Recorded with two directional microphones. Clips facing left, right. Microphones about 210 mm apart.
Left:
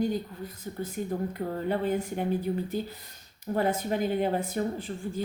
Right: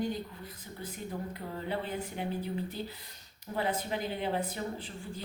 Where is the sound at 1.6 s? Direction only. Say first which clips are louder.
Left 7 dB; 45° left (ahead or behind).